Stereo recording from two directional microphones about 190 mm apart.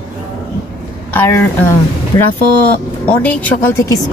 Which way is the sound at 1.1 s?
10° left (ahead or behind).